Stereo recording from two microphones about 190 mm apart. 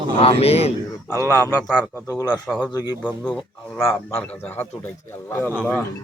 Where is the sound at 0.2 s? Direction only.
30° left (ahead or behind).